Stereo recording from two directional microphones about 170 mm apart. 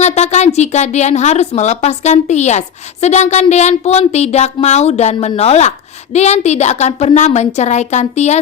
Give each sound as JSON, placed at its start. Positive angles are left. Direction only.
{"t": 0.0, "sound": "speech", "side_deg": 40}